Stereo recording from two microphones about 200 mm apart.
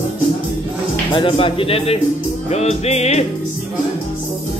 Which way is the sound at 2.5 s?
30° left (ahead or behind).